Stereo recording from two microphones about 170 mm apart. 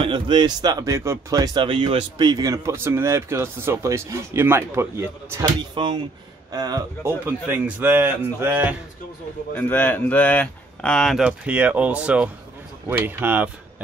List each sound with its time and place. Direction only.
0.0 s speech: 30° right (ahead or behind)
5.8 s speech: 30° right (ahead or behind); by 8.7 s 10° right (ahead or behind)
9.6 s speech: 10° left (ahead or behind); by 13.5 s 10° right (ahead or behind)